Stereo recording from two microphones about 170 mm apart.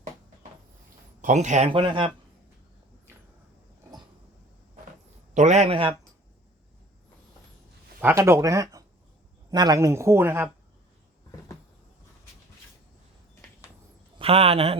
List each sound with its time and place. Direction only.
1.2 s speech: 45° right (ahead or behind)
1.7 s speech: 30° right (ahead or behind)
5.3 s a man's voice: 40° right (ahead or behind)
8.0 s a man's voice: 15° right (ahead or behind)
14.2 s a man's voice: 35° right (ahead or behind)